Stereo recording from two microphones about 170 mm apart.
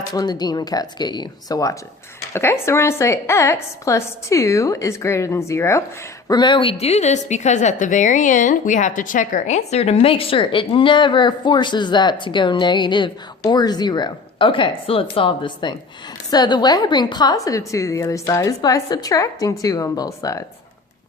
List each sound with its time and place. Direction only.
0.1 s a woman's voice: 25° left (ahead or behind)